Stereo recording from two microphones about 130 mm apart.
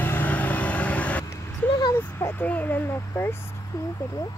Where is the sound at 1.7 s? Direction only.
35° left (ahead or behind).